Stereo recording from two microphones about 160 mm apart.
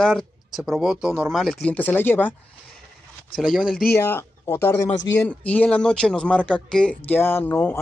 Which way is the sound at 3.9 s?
15° left (ahead or behind).